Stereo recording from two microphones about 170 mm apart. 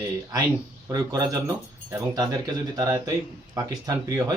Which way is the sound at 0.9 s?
20° right (ahead or behind).